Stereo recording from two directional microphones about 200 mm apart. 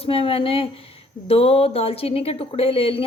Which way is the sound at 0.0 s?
30° left (ahead or behind).